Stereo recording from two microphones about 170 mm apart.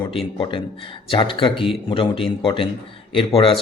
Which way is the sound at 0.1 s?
30° left (ahead or behind).